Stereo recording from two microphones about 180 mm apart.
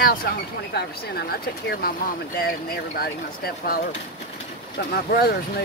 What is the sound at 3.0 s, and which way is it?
Speech, 60° left (ahead or behind).